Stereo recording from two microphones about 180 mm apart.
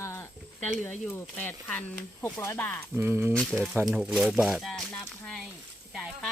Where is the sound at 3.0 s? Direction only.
10° right (ahead or behind).